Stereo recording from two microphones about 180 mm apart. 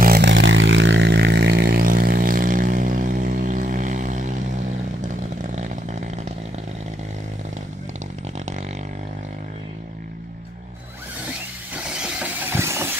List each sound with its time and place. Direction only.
0.0 s vehicle: 65° right (ahead or behind); by 4.4 s 45° right (ahead or behind)
5.0 s chainsaw: 45° right (ahead or behind)
11.7 s vehicle: 5° right (ahead or behind)